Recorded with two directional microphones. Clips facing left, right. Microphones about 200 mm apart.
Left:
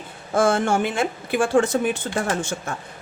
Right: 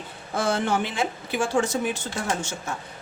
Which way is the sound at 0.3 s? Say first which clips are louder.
Left 5 dB; 50° left (ahead or behind).